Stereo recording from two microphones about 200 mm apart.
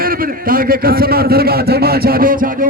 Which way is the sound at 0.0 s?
45° right (ahead or behind).